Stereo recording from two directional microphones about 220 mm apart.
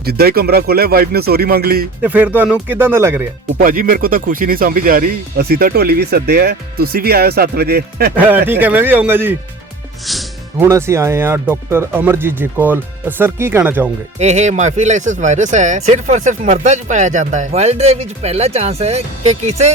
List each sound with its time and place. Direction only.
0.0 s speech: 45° right (ahead or behind)
2.0 s speech: 10° right (ahead or behind)
3.6 s speech: 40° right (ahead or behind)
8.1 s speech: 10° right (ahead or behind)
10.1 s music: centre (ahead or behind)
10.7 s speech: 10° right (ahead or behind)
14.2 s speech: 30° right (ahead or behind)